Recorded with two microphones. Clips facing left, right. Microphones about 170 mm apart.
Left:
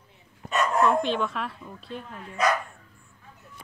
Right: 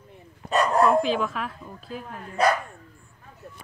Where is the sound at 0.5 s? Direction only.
35° right (ahead or behind).